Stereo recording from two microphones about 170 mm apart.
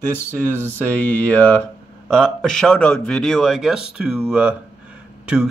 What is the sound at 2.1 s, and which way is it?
Speech, centre (ahead or behind).